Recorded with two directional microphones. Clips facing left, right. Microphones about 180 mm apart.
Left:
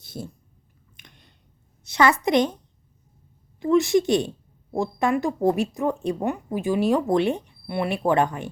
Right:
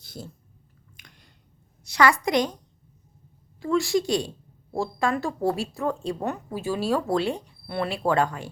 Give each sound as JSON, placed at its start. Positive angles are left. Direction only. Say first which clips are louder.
{"t": 0.9, "sound": "chewing", "louder": "left 2 dB", "side_deg": 25}
{"t": 1.8, "sound": "a woman's voice", "louder": "left 1 dB", "side_deg": 20}
{"t": 3.6, "sound": "a woman's voice", "louder": "left 4 dB", "side_deg": 20}